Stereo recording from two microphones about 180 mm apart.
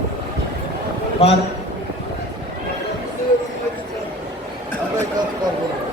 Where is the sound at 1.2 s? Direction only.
35° left (ahead or behind).